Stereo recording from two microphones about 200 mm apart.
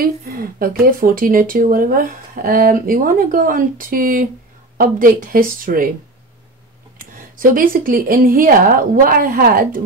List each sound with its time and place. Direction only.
0.0 s speech: 45° right (ahead or behind)
7.0 s speech: 45° right (ahead or behind)